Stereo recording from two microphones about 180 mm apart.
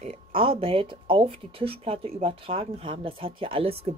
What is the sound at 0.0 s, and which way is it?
Speech, 35° right (ahead or behind).